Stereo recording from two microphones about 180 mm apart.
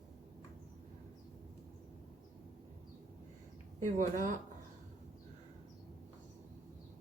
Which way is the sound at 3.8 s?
45° right (ahead or behind).